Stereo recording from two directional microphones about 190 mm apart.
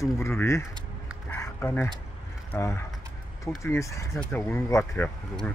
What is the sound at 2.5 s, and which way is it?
Speech, 15° left (ahead or behind).